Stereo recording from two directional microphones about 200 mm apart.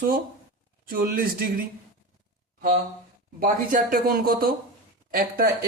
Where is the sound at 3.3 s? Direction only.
45° right (ahead or behind).